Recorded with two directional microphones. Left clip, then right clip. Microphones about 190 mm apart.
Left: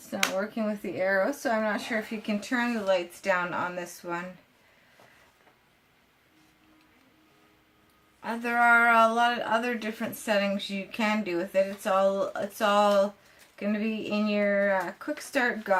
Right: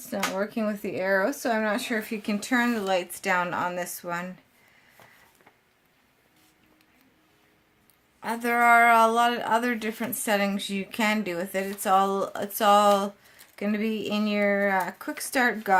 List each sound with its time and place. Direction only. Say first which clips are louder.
0.1 s a woman's voice: even; 55° right (ahead or behind)
8.2 s a woman's voice: right 2 dB; 60° right (ahead or behind)